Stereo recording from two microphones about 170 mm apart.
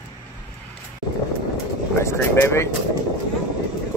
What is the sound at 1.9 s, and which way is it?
Vehicle, 15° left (ahead or behind).